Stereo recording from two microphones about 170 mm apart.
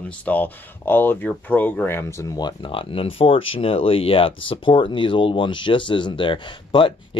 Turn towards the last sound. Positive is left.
turn(degrees=30)  # may be behind; listen again after turning